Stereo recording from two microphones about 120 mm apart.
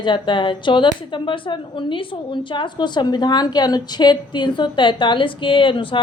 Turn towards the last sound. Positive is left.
turn(degrees=45)  # may be behind; listen again after turning